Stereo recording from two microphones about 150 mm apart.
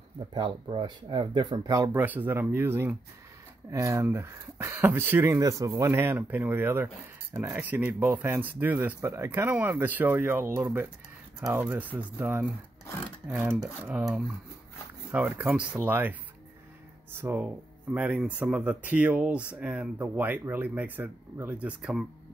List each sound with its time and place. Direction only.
0.3 s speech: 30° right (ahead or behind); by 16.2 s 10° right (ahead or behind)
17.2 s speech: 15° right (ahead or behind)